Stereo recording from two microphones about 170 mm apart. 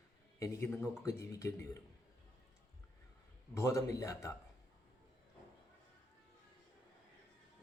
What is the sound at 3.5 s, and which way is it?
Speech, 15° left (ahead or behind).